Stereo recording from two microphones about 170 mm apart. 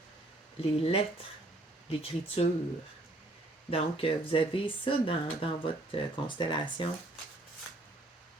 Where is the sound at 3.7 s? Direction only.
35° left (ahead or behind).